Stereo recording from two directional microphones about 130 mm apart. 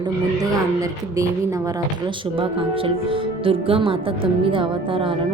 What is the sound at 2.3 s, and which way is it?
A woman's voice, 45° right (ahead or behind).